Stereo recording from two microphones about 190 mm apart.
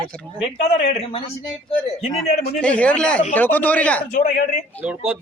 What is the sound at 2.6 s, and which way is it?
Speech, 5° left (ahead or behind).